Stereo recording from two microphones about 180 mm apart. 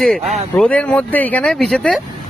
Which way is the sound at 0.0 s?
5° left (ahead or behind).